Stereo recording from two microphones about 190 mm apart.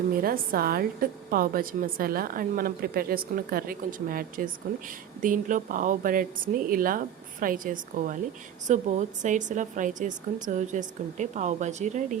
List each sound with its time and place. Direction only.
0.1 s a woman's voice: 50° right (ahead or behind)